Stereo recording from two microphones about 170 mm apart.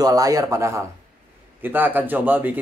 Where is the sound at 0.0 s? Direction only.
20° right (ahead or behind).